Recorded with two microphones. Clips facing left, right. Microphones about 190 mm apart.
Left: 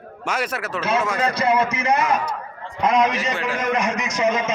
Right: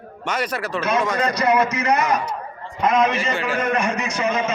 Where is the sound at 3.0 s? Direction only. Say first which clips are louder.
Right 1 dB; 25° right (ahead or behind).